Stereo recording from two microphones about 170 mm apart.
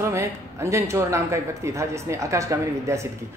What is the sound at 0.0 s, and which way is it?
Speech, 15° right (ahead or behind).